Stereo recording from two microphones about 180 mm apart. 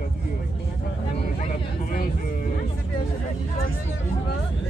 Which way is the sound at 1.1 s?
40° left (ahead or behind).